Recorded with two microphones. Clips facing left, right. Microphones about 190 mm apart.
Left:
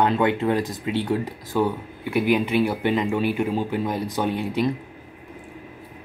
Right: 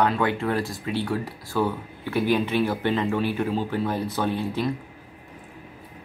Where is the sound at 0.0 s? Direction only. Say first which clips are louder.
Left 3 dB; 20° left (ahead or behind).